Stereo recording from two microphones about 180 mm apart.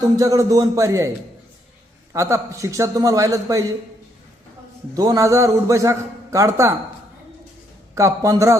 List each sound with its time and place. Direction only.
0.0 s a man's voice: 20° right (ahead or behind)
2.1 s a man's voice: 15° right (ahead or behind)
4.9 s a man's voice: 20° right (ahead or behind)
7.9 s a man's voice: 15° right (ahead or behind)